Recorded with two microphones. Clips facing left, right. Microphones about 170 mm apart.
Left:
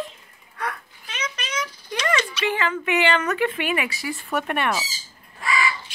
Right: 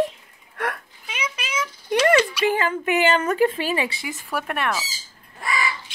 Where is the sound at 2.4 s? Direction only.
45° right (ahead or behind).